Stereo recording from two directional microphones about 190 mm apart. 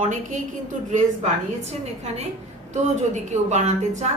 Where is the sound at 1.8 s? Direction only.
35° right (ahead or behind).